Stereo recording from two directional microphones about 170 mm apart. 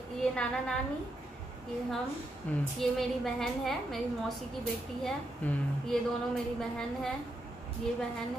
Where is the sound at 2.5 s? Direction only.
10° left (ahead or behind).